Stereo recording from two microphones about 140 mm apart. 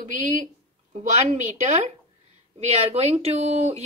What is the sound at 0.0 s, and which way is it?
A woman's voice, 60° right (ahead or behind).